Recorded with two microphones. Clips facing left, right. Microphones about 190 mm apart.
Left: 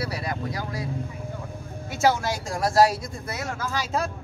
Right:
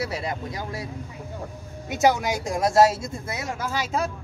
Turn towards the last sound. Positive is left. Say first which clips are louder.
# right 1 dB
turn(degrees=-15)  # may be behind; listen again after turning